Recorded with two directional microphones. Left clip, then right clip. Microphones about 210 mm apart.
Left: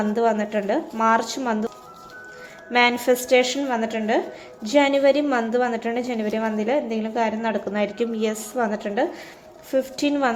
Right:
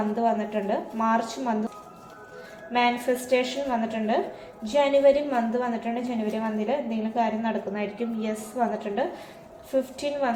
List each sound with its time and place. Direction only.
0.2 s a woman's voice: 45° left (ahead or behind)
2.7 s a woman's voice: 50° left (ahead or behind)